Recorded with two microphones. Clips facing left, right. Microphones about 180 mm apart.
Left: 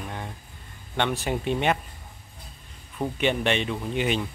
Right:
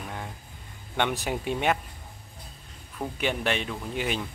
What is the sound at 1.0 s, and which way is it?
Speech, 15° right (ahead or behind).